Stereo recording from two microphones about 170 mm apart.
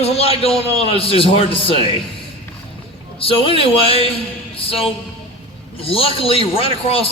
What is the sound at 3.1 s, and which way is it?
Speech, 35° left (ahead or behind).